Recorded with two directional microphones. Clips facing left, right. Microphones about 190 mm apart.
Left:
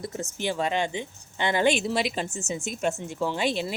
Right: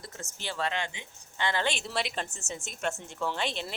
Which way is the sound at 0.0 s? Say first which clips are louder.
Left 11 dB; 15° left (ahead or behind).